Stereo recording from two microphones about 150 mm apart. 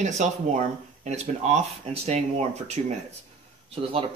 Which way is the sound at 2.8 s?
45° right (ahead or behind).